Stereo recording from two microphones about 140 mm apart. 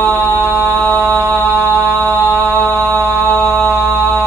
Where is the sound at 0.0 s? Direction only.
15° left (ahead or behind).